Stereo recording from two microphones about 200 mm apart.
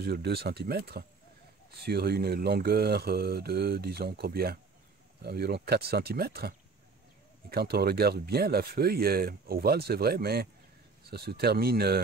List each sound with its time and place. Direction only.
0.0 s speech: 50° right (ahead or behind)